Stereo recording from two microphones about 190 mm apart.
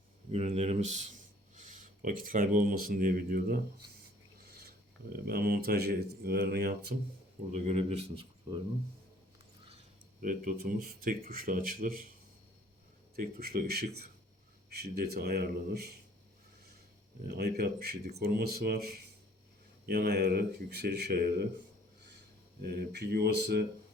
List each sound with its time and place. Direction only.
0.3 s speech: 35° right (ahead or behind)
5.0 s speech: 50° right (ahead or behind)
7.5 s speech: 35° right (ahead or behind)
10.2 s speech: 45° right (ahead or behind)
13.1 s speech: 50° right (ahead or behind)
14.9 s speech: 55° right (ahead or behind)
17.2 s speech: 55° right (ahead or behind)
22.6 s speech: 60° right (ahead or behind)